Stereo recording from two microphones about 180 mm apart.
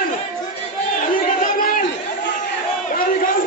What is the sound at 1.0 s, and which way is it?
Chatter, 50° left (ahead or behind).